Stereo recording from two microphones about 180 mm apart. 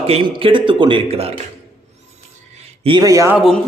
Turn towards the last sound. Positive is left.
turn(degrees=0)  # may be behind; listen again after turning